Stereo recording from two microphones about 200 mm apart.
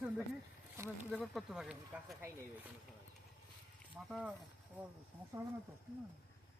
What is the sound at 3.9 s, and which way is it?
Speech, 5° right (ahead or behind).